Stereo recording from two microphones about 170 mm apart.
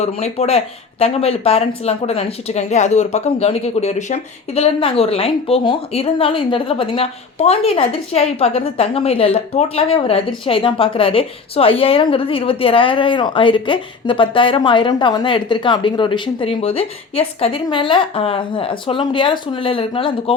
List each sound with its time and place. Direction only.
0.0 s speech: 40° left (ahead or behind)